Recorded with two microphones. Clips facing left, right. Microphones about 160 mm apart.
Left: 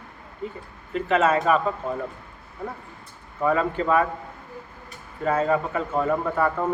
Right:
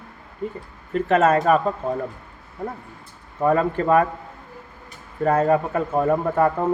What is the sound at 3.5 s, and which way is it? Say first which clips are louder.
Speech: right 3 dB; 45° right (ahead or behind).